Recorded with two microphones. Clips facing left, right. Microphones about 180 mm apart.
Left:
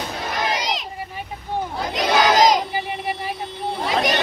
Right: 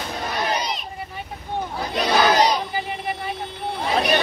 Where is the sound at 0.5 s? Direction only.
90° left.